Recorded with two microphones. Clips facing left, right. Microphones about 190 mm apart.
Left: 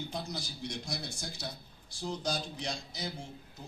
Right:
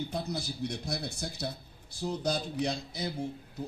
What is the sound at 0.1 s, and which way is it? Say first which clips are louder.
A man's voice: right 5 dB; 60° right (ahead or behind).